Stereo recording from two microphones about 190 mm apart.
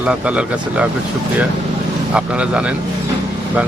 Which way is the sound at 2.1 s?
5° right (ahead or behind).